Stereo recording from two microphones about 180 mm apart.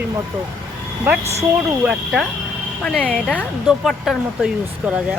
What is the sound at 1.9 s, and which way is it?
Speech, centre (ahead or behind).